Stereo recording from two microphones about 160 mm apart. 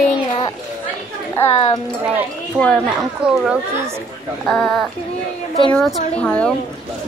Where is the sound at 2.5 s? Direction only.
5° left (ahead or behind).